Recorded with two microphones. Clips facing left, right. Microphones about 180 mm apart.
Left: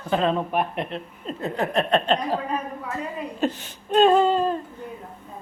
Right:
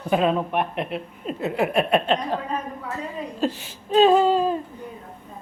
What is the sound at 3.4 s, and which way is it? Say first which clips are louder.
Speech: even; centre (ahead or behind).